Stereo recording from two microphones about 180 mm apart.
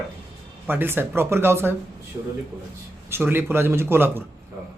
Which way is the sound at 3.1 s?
10° right (ahead or behind).